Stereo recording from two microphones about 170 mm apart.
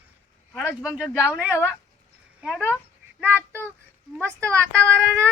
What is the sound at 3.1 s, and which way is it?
Child singing, 15° right (ahead or behind).